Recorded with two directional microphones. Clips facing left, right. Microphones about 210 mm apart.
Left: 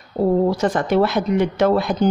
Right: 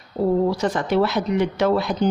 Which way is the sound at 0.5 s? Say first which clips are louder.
Left 3 dB; 50° left (ahead or behind).